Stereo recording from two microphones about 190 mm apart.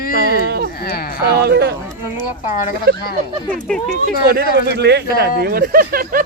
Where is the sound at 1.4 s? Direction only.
60° right (ahead or behind).